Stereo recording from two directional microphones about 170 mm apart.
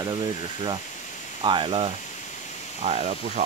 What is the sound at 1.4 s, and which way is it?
Speech, 30° right (ahead or behind).